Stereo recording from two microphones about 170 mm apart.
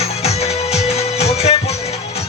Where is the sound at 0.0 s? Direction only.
40° left (ahead or behind).